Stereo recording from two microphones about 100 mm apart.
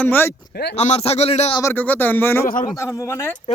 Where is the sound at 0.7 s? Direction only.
90° left.